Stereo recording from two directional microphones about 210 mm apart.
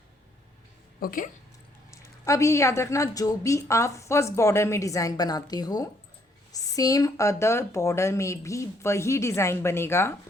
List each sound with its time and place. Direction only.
0.9 s a woman's voice: 40° left (ahead or behind)
1.9 s a woman's voice: 15° left (ahead or behind)